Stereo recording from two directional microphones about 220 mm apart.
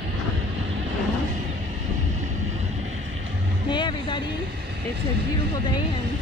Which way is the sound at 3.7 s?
20° left (ahead or behind).